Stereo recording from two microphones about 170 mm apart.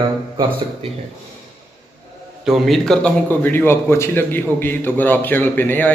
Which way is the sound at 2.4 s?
Centre (ahead or behind).